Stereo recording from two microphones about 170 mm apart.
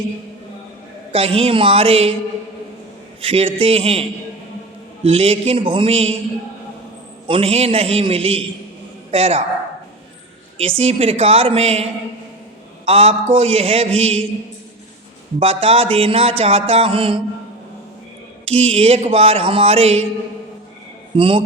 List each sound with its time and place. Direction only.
1.1 s music: 35° right (ahead or behind)
3.2 s music: 35° right (ahead or behind)
5.0 s music: 35° right (ahead or behind)
7.3 s music: 35° right (ahead or behind)
10.6 s music: 35° right (ahead or behind)
12.8 s a man's voice: 35° right (ahead or behind)
13.3 s music: 35° right (ahead or behind)
15.4 s music: 35° right (ahead or behind)
18.4 s music: 35° right (ahead or behind)
21.2 s music: 30° right (ahead or behind)